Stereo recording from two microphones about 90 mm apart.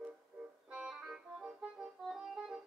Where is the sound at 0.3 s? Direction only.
20° right (ahead or behind).